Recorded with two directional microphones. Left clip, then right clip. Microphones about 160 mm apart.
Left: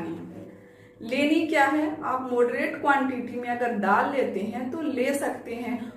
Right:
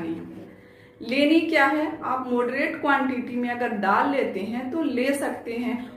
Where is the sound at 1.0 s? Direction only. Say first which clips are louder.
Right 3 dB; 20° right (ahead or behind).